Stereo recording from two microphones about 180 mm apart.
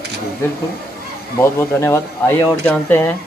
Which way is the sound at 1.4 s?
15° left (ahead or behind).